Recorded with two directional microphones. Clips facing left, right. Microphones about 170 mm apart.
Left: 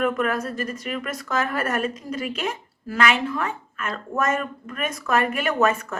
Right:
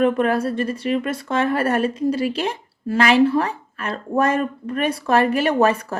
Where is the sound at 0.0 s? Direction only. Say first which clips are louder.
Right 5 dB; 30° right (ahead or behind).